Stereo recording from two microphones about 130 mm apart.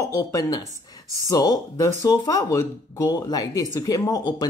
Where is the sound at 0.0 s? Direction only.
25° left (ahead or behind).